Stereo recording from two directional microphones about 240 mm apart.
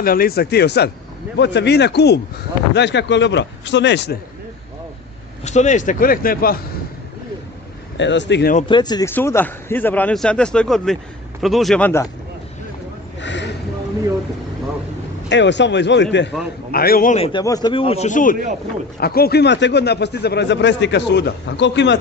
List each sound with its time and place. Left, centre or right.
0.0 s a man's voice: left
5.4 s speech: left
8.0 s a man's voice: left
8.5 s a man's voice: centre
13.2 s a sound: left
15.2 s a man's voice: left